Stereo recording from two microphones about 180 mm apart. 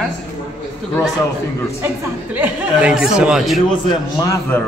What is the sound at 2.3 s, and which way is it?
Speech, 10° right (ahead or behind).